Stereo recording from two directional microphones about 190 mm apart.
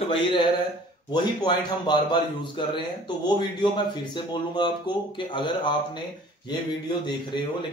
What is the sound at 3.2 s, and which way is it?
Speech, 25° left (ahead or behind).